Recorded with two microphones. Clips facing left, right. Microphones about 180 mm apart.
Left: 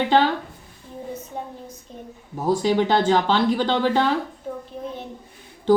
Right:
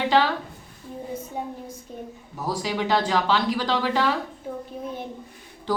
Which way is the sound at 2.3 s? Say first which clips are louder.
Left 8 dB; 30° left (ahead or behind).